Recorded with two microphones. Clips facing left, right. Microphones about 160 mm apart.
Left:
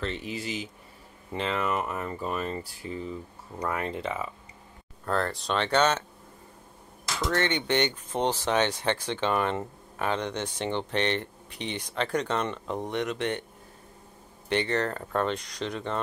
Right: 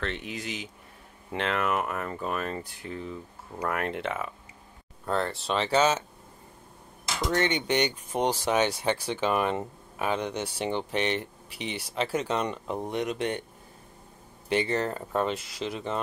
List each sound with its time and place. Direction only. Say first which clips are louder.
0.0 s speech: left 1 dB; 60° right (ahead or behind)
1.4 s speech: right 1 dB; centre (ahead or behind)
3.5 s speech: right 1 dB; 5° right (ahead or behind)
7.2 s speech: right 1 dB; 10° right (ahead or behind)
14.5 s speech: even; 10° right (ahead or behind)